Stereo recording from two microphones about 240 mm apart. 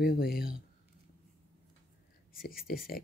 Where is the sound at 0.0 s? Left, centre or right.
Left.